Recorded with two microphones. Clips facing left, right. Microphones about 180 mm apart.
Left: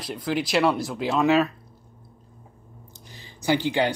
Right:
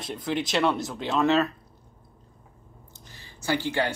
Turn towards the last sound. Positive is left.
turn(degrees=15)  # may be behind; listen again after turning